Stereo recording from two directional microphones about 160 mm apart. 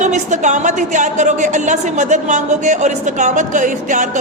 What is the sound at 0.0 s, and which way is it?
A woman's voice, 50° right (ahead or behind).